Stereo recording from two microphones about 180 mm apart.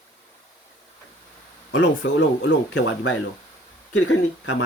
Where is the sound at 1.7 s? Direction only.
90° left.